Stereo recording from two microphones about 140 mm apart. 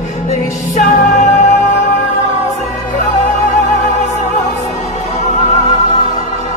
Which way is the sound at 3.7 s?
60° left (ahead or behind).